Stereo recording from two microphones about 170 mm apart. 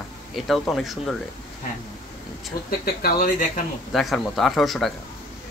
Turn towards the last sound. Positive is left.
turn(degrees=0)  # may be behind; listen again after turning